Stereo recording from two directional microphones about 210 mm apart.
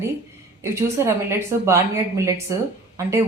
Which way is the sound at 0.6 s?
15° right (ahead or behind).